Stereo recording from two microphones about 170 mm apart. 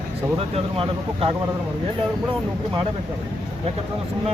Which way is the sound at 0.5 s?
35° right (ahead or behind).